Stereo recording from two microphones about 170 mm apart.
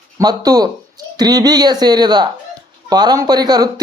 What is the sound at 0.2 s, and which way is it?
A man's voice, 20° right (ahead or behind).